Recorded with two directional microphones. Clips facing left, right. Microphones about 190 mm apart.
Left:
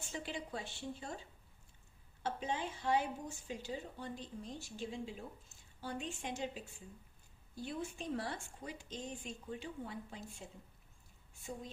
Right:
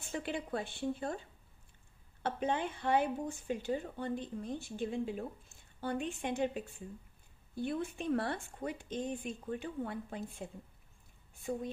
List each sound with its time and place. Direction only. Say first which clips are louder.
0.0 s speech: right 5 dB; 55° right (ahead or behind)
2.2 s speech: right 5 dB; 60° right (ahead or behind)